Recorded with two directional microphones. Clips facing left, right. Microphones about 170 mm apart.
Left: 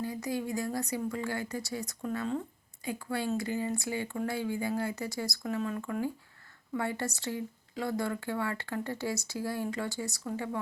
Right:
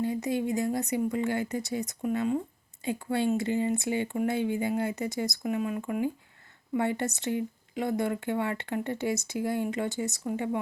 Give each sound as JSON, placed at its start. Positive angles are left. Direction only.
{"t": 0.0, "sound": "speech", "side_deg": -25}